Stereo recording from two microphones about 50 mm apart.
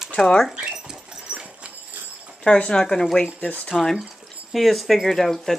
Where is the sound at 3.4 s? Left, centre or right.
Left.